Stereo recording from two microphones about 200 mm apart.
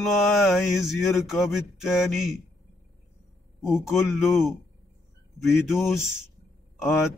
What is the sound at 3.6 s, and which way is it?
Speech, centre (ahead or behind).